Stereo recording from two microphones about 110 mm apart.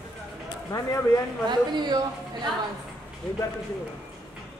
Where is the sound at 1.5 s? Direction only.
40° right (ahead or behind).